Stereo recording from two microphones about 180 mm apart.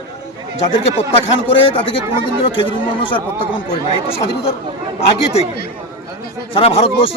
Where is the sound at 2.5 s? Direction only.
30° left (ahead or behind).